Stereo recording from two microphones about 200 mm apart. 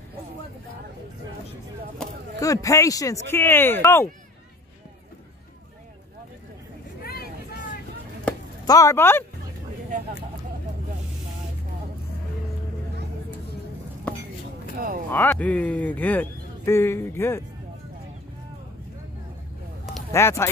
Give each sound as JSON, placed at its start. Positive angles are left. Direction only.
{"t": 2.4, "sound": "speech", "side_deg": 15}
{"t": 7.0, "sound": "vehicle", "side_deg": 50}
{"t": 8.6, "sound": "speech", "side_deg": 15}
{"t": 14.1, "sound": "a sound", "side_deg": 5}
{"t": 14.8, "sound": "a sound", "side_deg": -45}
{"t": 15.0, "sound": "speech", "side_deg": 10}
{"t": 20.1, "sound": "speech", "side_deg": 15}